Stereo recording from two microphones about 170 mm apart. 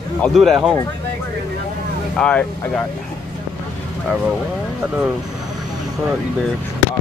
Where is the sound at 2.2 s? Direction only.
5° left (ahead or behind).